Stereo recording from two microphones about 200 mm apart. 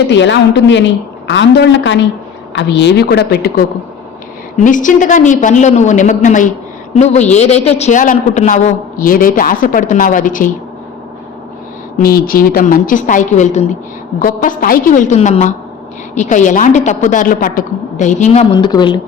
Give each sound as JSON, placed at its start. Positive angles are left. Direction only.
{"t": 0.1, "sound": "a woman's voice", "side_deg": 60}
{"t": 4.5, "sound": "a man's voice", "side_deg": 40}
{"t": 11.9, "sound": "a man's voice", "side_deg": 45}
{"t": 18.5, "sound": "speech", "side_deg": 25}